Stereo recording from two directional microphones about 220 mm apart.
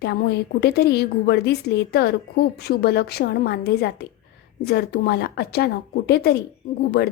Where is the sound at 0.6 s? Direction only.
45° left (ahead or behind).